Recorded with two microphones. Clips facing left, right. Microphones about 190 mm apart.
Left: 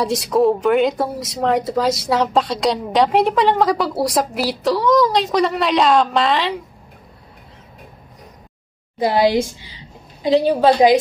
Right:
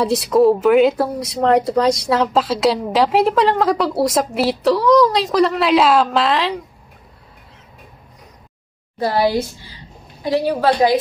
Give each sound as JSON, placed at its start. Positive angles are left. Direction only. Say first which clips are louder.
{"t": 0.0, "sound": "speech", "louder": "right 2 dB", "side_deg": 0}
{"t": 9.0, "sound": "a woman's voice", "louder": "left 2 dB", "side_deg": 20}